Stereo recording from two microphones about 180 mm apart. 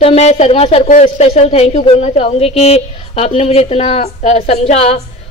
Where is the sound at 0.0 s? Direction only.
35° left (ahead or behind).